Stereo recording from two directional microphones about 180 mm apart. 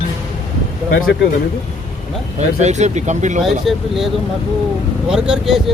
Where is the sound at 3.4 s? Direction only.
Centre (ahead or behind).